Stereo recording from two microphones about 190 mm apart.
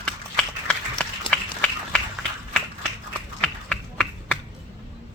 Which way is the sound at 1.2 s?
5° left (ahead or behind).